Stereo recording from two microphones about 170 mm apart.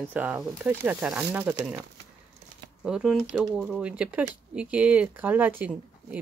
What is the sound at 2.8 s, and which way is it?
Speech, 5° right (ahead or behind).